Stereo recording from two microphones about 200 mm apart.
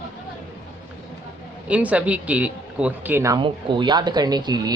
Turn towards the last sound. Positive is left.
turn(degrees=-20)  # may be behind; listen again after turning